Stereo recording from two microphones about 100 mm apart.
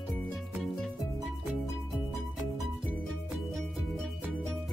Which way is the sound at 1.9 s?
Centre (ahead or behind).